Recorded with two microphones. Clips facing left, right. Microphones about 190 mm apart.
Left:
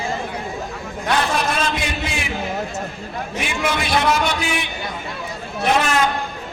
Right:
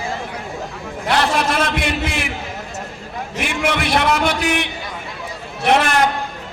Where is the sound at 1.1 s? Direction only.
70° right (ahead or behind).